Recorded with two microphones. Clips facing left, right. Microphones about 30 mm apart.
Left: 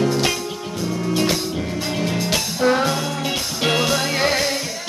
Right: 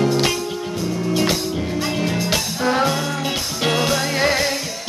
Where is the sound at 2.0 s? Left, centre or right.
Centre.